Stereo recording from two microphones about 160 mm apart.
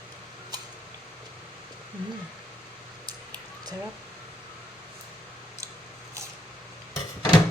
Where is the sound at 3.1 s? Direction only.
25° right (ahead or behind).